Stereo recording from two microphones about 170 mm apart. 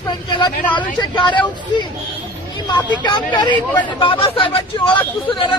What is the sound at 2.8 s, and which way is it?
Speech, 10° left (ahead or behind).